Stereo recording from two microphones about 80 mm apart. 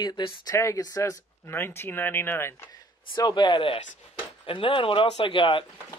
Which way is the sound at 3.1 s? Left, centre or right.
Left.